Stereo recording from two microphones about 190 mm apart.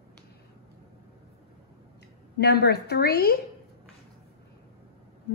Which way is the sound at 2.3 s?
60° left (ahead or behind).